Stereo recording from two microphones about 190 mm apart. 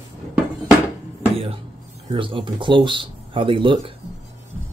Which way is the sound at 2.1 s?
25° right (ahead or behind).